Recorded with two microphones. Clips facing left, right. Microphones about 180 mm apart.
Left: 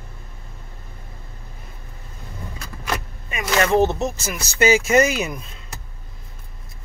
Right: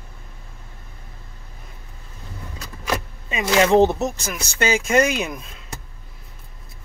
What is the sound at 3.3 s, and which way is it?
Speech, 20° right (ahead or behind).